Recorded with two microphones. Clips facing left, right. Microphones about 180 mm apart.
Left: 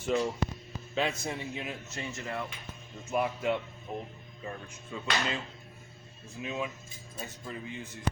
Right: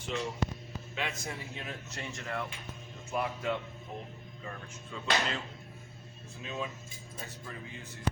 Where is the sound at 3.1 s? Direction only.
20° left (ahead or behind).